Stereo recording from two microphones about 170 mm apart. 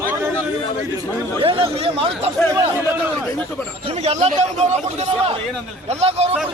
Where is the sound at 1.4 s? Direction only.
30° right (ahead or behind).